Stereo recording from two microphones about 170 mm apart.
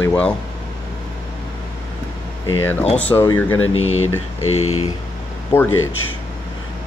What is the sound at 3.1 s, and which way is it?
Speech, 15° left (ahead or behind).